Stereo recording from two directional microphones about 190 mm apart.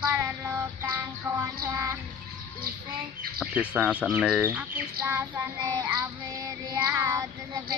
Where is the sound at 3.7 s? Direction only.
5° right (ahead or behind).